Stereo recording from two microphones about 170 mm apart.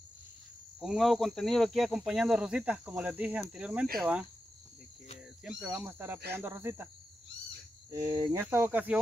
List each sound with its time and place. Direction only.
0.7 s speech: centre (ahead or behind)
5.6 s speech: 5° right (ahead or behind)
7.9 s speech: 20° right (ahead or behind)